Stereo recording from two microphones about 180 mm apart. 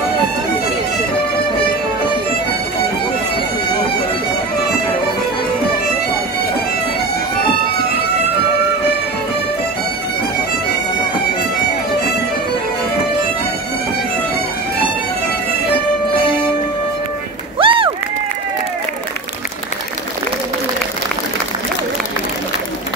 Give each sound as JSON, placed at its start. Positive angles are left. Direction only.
{"t": 17.6, "sound": "run", "side_deg": -30}